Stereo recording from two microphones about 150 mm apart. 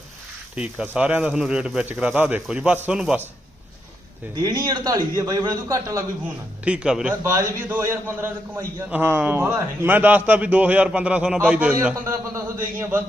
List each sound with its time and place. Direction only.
0.5 s a man's voice: 5° right (ahead or behind)
4.4 s a man's voice: 25° right (ahead or behind)
6.2 s speech: 5° right (ahead or behind)
7.1 s a man's voice: 20° right (ahead or behind)